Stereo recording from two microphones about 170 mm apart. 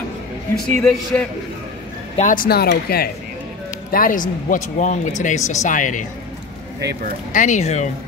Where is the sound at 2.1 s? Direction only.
50° left (ahead or behind); by 3.0 s 65° left (ahead or behind).